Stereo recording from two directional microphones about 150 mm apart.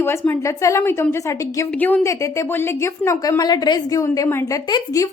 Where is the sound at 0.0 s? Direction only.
15° left (ahead or behind).